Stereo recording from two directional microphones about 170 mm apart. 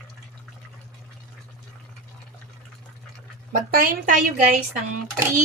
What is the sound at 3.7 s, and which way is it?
Speech, 50° right (ahead or behind).